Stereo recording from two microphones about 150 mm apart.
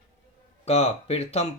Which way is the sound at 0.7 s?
45° left (ahead or behind).